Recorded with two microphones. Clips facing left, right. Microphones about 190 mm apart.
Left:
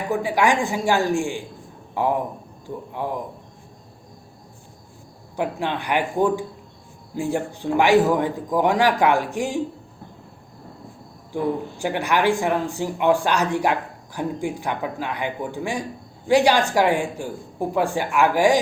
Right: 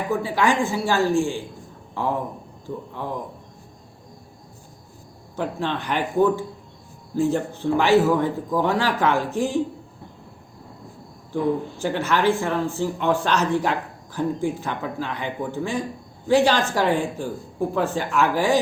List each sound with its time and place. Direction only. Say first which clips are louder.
0.1 s speech: left 2 dB; 15° left (ahead or behind)
2.6 s speech: left 2 dB; 15° left (ahead or behind)
5.4 s speech: left 1 dB; 15° left (ahead or behind)
11.8 s speech: left 2 dB; 15° left (ahead or behind)